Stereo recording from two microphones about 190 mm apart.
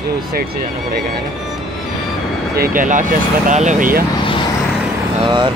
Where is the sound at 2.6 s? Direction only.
45° right (ahead or behind).